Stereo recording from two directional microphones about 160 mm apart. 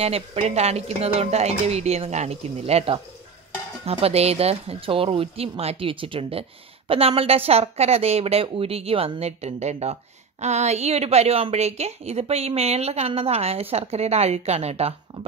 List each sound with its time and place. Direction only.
0.0 s a woman's voice: 40° right (ahead or behind)